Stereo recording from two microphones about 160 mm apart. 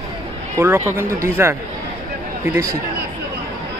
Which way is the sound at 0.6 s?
15° right (ahead or behind).